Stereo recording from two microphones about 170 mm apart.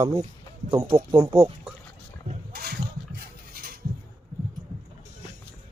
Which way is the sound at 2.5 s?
65° right (ahead or behind).